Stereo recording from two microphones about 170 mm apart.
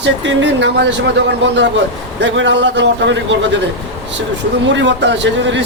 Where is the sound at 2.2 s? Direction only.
90° right.